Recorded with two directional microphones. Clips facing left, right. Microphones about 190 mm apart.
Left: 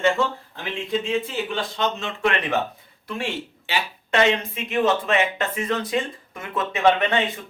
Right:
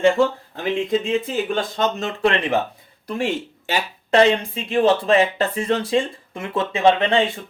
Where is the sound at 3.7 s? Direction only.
40° right (ahead or behind).